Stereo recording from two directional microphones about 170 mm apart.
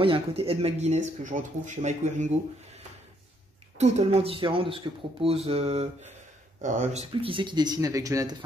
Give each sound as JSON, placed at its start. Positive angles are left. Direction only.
{"t": 0.0, "sound": "speech", "side_deg": -35}
{"t": 3.7, "sound": "speech", "side_deg": -40}